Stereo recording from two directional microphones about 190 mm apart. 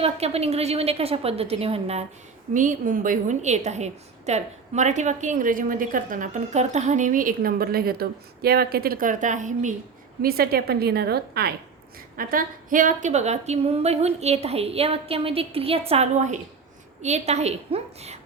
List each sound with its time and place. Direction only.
0.0 s a woman's voice: 35° right (ahead or behind)
2.5 s a woman's voice: 45° right (ahead or behind)
10.2 s a woman's voice: 55° right (ahead or behind); by 18.2 s 35° right (ahead or behind)